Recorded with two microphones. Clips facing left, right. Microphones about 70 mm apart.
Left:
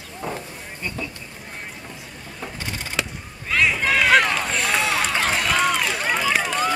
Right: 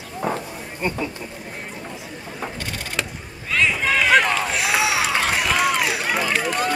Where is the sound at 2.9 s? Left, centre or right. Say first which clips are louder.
Even; centre.